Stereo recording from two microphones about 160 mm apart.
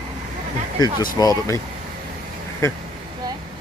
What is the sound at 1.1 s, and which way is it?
Speech, 20° left (ahead or behind).